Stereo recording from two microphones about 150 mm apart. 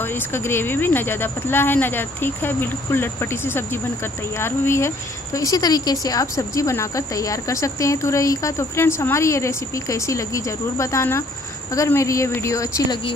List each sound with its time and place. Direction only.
0.0 s a woman's voice: 15° left (ahead or behind)